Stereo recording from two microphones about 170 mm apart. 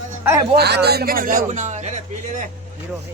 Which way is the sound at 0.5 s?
75° right (ahead or behind).